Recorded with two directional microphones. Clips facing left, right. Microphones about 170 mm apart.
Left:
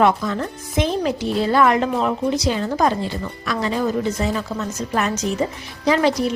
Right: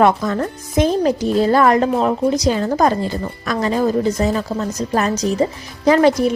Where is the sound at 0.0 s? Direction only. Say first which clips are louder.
Right 3 dB; 45° right (ahead or behind).